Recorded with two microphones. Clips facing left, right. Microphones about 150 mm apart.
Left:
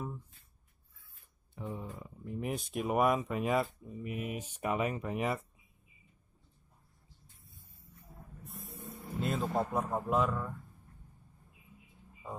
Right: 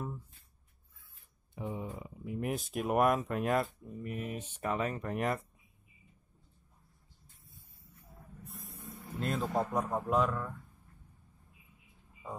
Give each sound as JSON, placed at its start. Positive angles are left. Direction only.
{"t": 1.5, "sound": "a sound", "side_deg": -15}
{"t": 2.2, "sound": "speech", "side_deg": -5}
{"t": 8.5, "sound": "vehicle", "side_deg": 0}
{"t": 9.2, "sound": "speech", "side_deg": 0}